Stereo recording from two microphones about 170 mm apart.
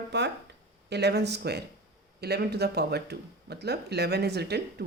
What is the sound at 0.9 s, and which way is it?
Speech, 80° right.